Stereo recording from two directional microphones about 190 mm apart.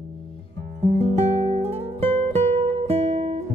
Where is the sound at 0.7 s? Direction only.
35° right (ahead or behind).